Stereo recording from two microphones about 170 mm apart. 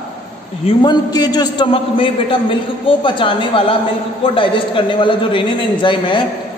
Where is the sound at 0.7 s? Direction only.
25° left (ahead or behind).